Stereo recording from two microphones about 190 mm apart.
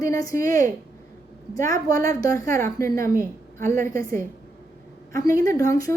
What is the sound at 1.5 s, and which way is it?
Speech, 45° right (ahead or behind).